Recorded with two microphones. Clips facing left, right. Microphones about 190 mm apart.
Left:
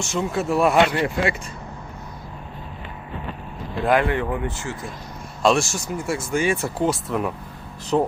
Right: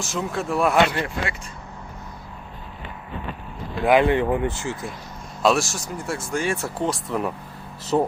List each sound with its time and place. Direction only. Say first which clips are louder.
0.0 s speech: left 3 dB; centre (ahead or behind)
3.8 s speech: right 3 dB; 20° right (ahead or behind)
5.4 s speech: left 1 dB; centre (ahead or behind)